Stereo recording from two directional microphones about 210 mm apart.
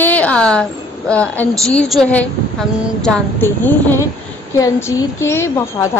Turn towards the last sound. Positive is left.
turn(degrees=10)  # may be behind; listen again after turning